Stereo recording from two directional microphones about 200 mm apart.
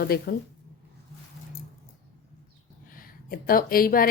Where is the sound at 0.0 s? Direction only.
50° left (ahead or behind).